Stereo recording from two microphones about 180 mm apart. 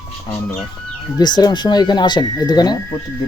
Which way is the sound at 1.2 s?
25° left (ahead or behind).